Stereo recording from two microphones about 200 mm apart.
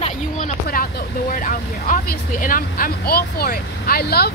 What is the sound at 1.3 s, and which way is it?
Speech, 40° left (ahead or behind).